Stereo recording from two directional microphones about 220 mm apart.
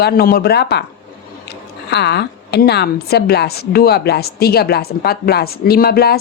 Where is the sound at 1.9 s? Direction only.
50° left (ahead or behind).